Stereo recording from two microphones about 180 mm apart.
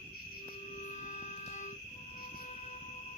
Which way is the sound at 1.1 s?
40° left (ahead or behind).